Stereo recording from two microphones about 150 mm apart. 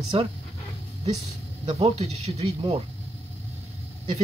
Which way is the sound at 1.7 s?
45° right (ahead or behind).